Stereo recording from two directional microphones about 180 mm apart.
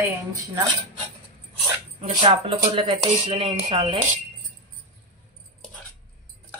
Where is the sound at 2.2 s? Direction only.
25° right (ahead or behind).